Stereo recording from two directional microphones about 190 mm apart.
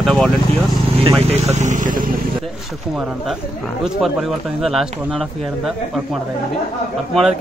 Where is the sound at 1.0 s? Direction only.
30° right (ahead or behind).